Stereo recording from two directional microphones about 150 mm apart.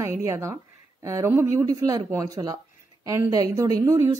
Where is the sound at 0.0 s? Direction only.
20° right (ahead or behind).